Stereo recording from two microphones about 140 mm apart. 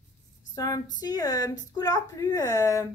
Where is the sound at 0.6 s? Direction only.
25° left (ahead or behind).